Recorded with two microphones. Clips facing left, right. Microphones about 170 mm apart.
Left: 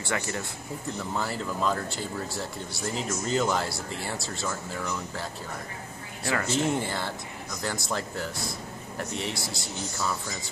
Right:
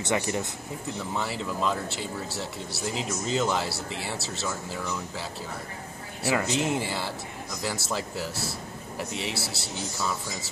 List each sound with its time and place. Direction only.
0.0 s speech: 20° right (ahead or behind)
1.1 s speech: centre (ahead or behind)
6.3 s speech: 15° right (ahead or behind)
6.6 s speech: centre (ahead or behind)